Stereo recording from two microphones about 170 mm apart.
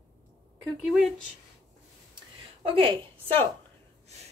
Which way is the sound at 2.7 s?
30° right (ahead or behind).